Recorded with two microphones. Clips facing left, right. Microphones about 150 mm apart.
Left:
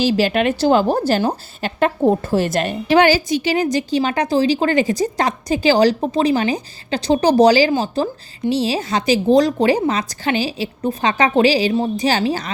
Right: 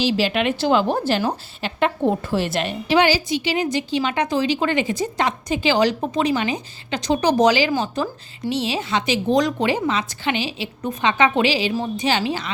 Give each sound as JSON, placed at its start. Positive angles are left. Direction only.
{"t": 0.0, "sound": "a woman's voice", "side_deg": 45}